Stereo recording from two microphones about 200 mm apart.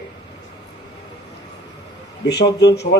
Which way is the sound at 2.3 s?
55° left (ahead or behind).